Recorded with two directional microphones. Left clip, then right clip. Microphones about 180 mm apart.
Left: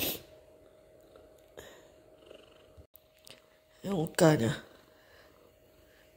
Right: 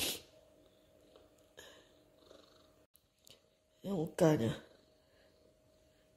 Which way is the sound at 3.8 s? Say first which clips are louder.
Left 6 dB; 15° right (ahead or behind).